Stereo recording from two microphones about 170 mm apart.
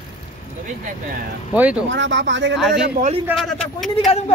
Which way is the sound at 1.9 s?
90° right.